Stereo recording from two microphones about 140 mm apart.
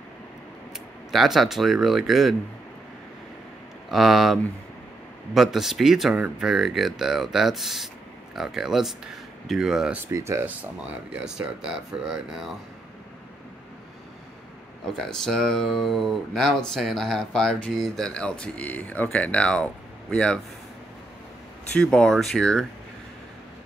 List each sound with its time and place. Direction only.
1.1 s speech: centre (ahead or behind)
3.9 s speech: centre (ahead or behind)
10.1 s speech: 20° right (ahead or behind)
11.1 s speech: 5° right (ahead or behind)
15.0 s speech: 5° left (ahead or behind)
21.7 s speech: 5° left (ahead or behind)